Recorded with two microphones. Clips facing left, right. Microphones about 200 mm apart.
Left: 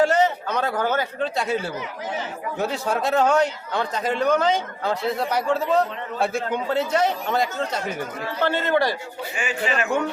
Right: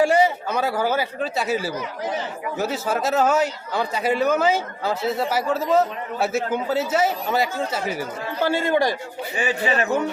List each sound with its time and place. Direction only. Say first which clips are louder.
0.0 s a man's voice: right 1 dB; 10° right (ahead or behind)
9.3 s a man's voice: right 3 dB; 35° right (ahead or behind)